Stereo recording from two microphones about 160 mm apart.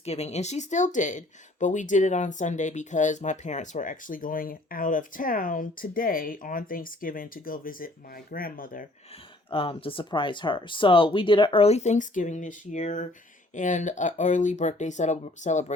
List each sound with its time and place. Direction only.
0.0 s speech: 40° left (ahead or behind); by 8.9 s 60° left (ahead or behind)
9.5 s speech: 35° left (ahead or behind)